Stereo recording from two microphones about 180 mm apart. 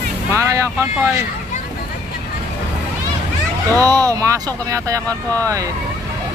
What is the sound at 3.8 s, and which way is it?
Speech, 20° right (ahead or behind).